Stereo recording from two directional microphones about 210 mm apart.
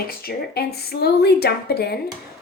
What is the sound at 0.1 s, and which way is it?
Speech, 45° left (ahead or behind).